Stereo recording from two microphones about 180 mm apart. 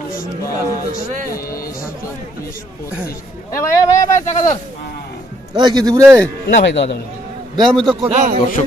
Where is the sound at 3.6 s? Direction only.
20° left (ahead or behind).